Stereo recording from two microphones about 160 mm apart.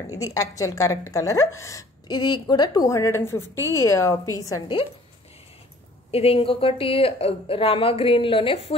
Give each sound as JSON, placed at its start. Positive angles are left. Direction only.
{"t": 0.0, "sound": "a woman's voice", "side_deg": 20}
{"t": 6.1, "sound": "a woman's voice", "side_deg": 35}